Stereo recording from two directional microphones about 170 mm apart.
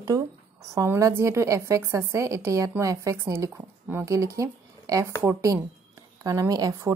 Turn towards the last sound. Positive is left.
turn(degrees=-20)  # may be behind; listen again after turning